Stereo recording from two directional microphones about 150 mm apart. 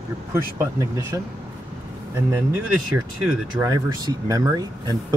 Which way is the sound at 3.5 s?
25° right (ahead or behind).